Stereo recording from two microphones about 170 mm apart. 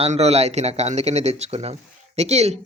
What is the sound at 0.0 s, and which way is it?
Speech, 40° right (ahead or behind).